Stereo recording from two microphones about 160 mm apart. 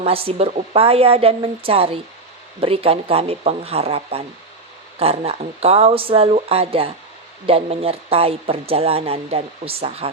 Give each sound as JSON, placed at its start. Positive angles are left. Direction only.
{"t": 0.0, "sound": "speech", "side_deg": -35}